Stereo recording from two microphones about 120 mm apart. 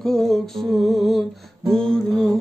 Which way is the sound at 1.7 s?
5° left (ahead or behind).